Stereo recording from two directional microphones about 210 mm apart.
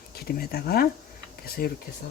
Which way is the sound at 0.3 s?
45° left (ahead or behind).